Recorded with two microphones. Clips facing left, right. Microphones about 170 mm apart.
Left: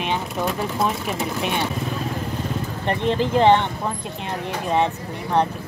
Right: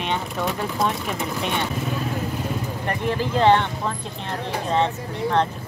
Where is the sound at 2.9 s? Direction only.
20° left (ahead or behind).